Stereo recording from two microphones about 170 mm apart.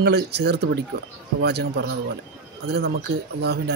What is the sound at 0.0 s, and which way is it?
A man's voice, 75° right (ahead or behind).